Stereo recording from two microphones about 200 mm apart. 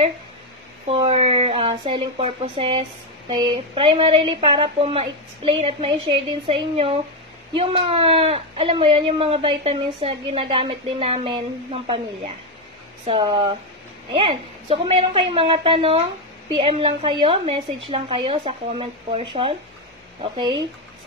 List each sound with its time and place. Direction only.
0.8 s speech: 30° right (ahead or behind)
13.0 s speech: 25° right (ahead or behind)